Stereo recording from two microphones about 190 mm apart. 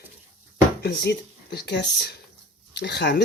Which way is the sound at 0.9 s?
60° left (ahead or behind).